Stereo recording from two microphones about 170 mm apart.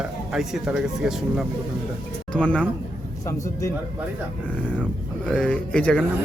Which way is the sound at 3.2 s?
20° left (ahead or behind).